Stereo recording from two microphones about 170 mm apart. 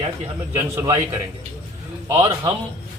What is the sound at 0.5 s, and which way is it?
Speech, 20° right (ahead or behind).